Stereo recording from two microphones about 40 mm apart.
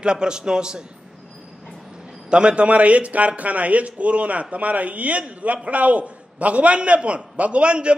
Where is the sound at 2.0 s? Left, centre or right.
Right.